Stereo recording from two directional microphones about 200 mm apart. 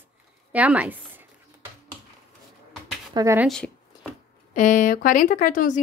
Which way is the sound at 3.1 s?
20° right (ahead or behind).